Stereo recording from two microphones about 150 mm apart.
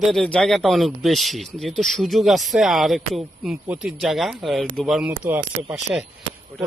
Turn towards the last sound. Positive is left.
turn(degrees=5)  # may be behind; listen again after turning